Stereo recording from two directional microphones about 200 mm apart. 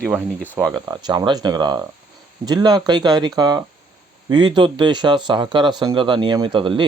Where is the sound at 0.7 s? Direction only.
20° right (ahead or behind).